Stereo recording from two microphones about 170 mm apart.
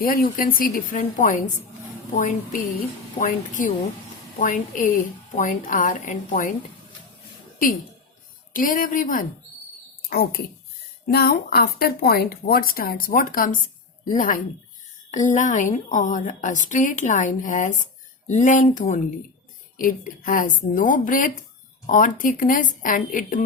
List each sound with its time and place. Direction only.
0.1 s a woman's voice: 55° left (ahead or behind)
8.5 s a woman's voice: 55° left (ahead or behind)
10.1 s a woman's voice: 65° left (ahead or behind)